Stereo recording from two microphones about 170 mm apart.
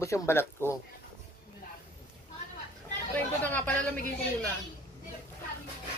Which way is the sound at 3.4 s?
10° left (ahead or behind).